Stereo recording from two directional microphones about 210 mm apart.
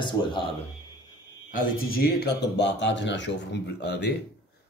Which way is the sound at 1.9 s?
50° left (ahead or behind).